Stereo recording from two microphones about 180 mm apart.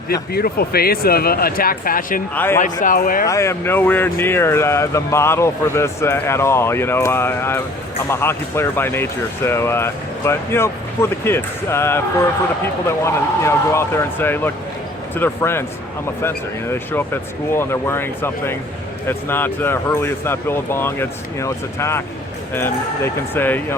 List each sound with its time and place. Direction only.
0.1 s speech: 60° left (ahead or behind)
2.3 s speech: 10° left (ahead or behind)
2.8 s speech: 50° left (ahead or behind)
3.2 s speech: 15° left (ahead or behind)
13.1 s speech: 15° left (ahead or behind)
17.5 s speech: 15° left (ahead or behind)